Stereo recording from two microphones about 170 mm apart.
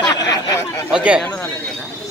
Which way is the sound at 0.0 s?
20° left (ahead or behind).